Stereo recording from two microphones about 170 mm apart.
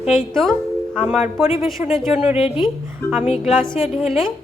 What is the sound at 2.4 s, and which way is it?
Speech, 30° left (ahead or behind).